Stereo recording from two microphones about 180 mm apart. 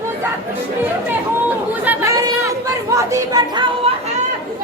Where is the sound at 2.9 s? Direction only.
15° right (ahead or behind).